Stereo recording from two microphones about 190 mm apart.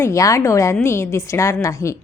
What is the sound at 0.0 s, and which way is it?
A woman's voice, 15° left (ahead or behind).